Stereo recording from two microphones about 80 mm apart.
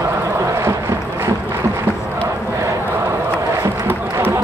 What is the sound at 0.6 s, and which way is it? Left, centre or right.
Boat, right.